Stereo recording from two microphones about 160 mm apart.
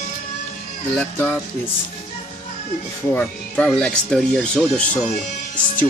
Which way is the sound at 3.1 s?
5° left (ahead or behind).